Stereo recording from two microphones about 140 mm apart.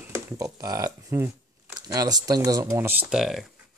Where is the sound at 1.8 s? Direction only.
25° right (ahead or behind); by 3.4 s 5° right (ahead or behind).